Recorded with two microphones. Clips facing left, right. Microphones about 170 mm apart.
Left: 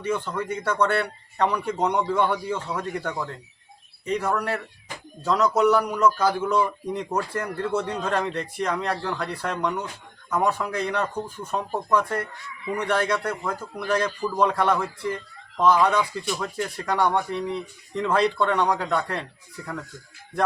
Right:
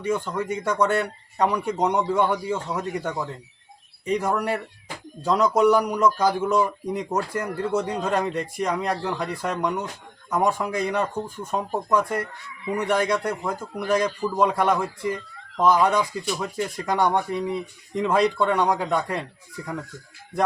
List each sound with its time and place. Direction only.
0.0 s speech: 10° right (ahead or behind)